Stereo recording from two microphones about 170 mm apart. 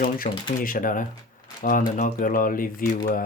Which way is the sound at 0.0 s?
55° left (ahead or behind).